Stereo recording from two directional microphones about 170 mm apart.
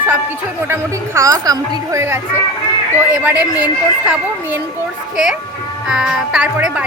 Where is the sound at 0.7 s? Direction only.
15° right (ahead or behind).